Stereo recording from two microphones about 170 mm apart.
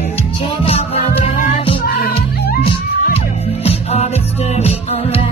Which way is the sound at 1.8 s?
65° left (ahead or behind).